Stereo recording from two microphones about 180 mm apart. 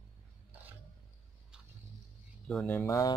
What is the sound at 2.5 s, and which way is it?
Speech, 5° left (ahead or behind).